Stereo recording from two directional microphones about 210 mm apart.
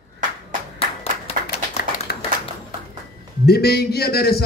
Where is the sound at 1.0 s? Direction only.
30° left (ahead or behind).